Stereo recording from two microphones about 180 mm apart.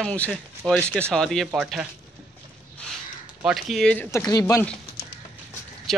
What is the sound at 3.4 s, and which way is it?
Speech, centre (ahead or behind).